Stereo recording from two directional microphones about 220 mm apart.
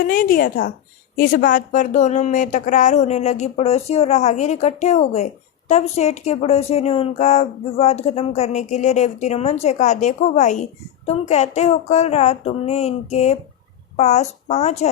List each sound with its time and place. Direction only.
0.1 s speech: 40° left (ahead or behind)
12.5 s a sound: 30° left (ahead or behind)
13.9 s speech: 30° left (ahead or behind)